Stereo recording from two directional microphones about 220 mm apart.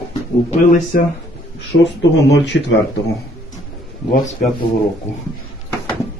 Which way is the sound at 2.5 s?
55° left (ahead or behind).